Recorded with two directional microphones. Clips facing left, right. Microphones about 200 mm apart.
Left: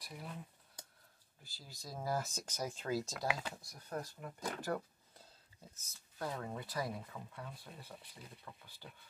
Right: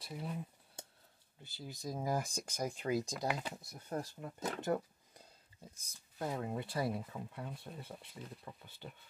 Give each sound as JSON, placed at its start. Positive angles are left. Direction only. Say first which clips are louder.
{"t": 0.0, "sound": "speech", "louder": "right 5 dB", "side_deg": -25}
{"t": 0.8, "sound": "a sound", "louder": "right 5 dB", "side_deg": -25}
{"t": 1.4, "sound": "speech", "louder": "right 9 dB", "side_deg": -20}